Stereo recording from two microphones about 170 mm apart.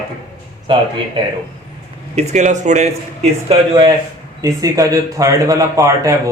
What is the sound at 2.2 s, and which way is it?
Speech, 45° right (ahead or behind).